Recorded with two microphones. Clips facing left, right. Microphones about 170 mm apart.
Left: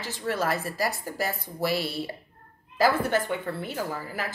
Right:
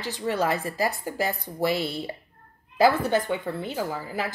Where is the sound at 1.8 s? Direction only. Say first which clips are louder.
Right 1 dB; 5° left (ahead or behind).